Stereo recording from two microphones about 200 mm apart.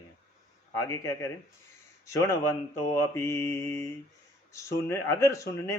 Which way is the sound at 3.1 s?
15° left (ahead or behind).